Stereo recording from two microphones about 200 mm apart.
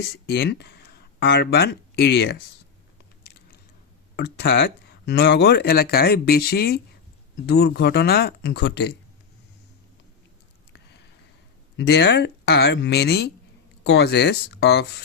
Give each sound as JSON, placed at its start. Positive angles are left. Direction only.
{"t": 0.3, "sound": "speech", "side_deg": 55}
{"t": 4.2, "sound": "speech", "side_deg": 60}
{"t": 11.8, "sound": "speech", "side_deg": 55}